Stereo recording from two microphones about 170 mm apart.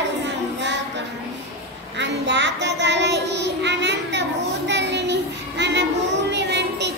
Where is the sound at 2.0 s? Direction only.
90° right.